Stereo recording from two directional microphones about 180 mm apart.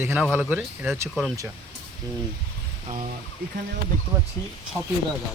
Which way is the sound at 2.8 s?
30° right (ahead or behind).